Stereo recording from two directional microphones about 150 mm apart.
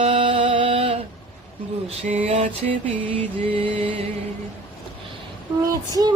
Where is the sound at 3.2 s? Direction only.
40° right (ahead or behind).